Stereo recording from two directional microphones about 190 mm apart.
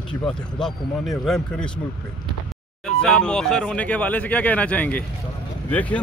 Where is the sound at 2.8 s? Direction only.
5° left (ahead or behind).